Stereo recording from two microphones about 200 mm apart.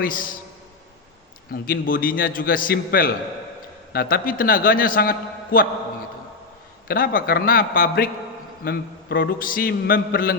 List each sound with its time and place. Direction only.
0.0 s a man's voice: 45° left (ahead or behind)
1.6 s a man's voice: 45° left (ahead or behind)
6.8 s a man's voice: 45° left (ahead or behind)